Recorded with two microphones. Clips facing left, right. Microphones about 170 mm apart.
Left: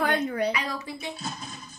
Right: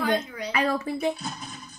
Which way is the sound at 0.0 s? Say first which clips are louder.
Left 1 dB; 60° left (ahead or behind).